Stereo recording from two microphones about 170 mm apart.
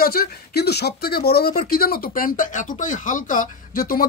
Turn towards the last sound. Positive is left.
turn(degrees=60)  # may be behind; listen again after turning